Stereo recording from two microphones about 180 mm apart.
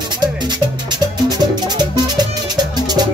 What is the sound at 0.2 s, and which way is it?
Music, 25° right (ahead or behind).